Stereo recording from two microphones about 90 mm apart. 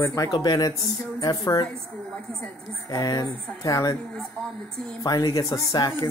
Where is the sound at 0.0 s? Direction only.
35° left (ahead or behind).